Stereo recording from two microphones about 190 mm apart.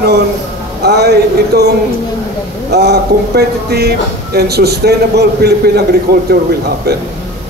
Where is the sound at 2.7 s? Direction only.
60° right (ahead or behind).